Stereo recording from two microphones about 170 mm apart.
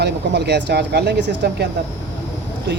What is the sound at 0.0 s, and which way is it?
Speech, 80° right.